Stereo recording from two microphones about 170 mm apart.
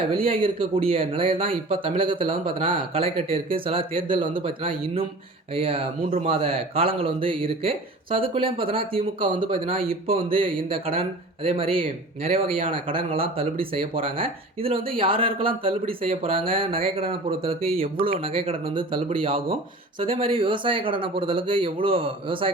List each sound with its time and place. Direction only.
0.1 s speech: 30° right (ahead or behind)